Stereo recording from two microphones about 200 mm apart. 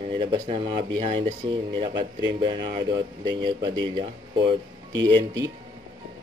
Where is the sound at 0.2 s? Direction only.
25° right (ahead or behind).